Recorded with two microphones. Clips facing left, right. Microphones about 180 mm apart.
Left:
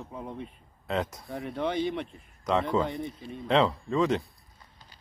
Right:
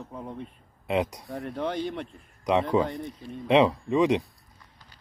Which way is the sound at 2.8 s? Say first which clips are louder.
Right 2 dB; 15° right (ahead or behind).